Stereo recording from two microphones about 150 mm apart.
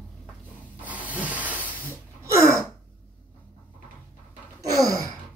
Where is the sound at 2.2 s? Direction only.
20° right (ahead or behind).